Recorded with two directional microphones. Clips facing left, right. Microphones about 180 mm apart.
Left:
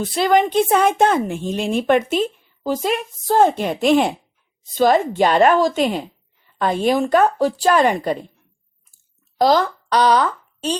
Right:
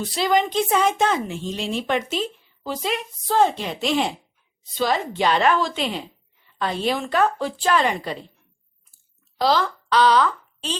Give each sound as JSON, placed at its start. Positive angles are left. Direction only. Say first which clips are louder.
{"t": 0.0, "sound": "a woman's voice", "louder": "left 4 dB", "side_deg": 55}
{"t": 9.4, "sound": "a woman's voice", "louder": "left 5 dB", "side_deg": 45}